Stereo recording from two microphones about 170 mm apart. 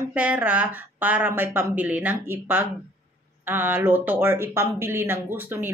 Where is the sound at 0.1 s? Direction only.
10° right (ahead or behind).